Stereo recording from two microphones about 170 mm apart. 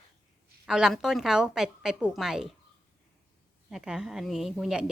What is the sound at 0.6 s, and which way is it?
A woman's voice, 5° right (ahead or behind).